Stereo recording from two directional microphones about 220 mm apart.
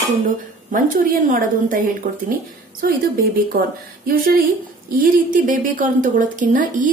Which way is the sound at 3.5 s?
40° right (ahead or behind).